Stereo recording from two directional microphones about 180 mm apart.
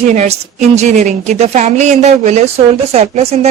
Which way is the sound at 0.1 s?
40° right (ahead or behind).